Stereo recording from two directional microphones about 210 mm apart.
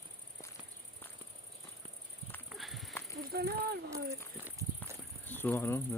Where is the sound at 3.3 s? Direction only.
45° right (ahead or behind).